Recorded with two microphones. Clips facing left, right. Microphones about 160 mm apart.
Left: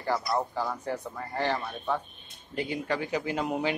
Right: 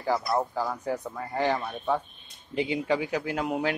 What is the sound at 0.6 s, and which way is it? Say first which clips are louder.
Speech: right 2 dB; 10° right (ahead or behind).